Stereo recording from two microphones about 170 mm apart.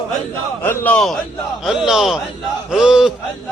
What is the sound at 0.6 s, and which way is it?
A man's voice, 10° left (ahead or behind).